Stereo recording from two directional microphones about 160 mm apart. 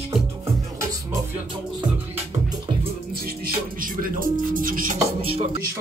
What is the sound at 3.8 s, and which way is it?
Music, 60° right (ahead or behind).